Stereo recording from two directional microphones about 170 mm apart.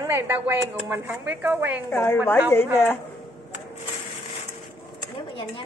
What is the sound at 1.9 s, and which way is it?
Speech, 10° left (ahead or behind).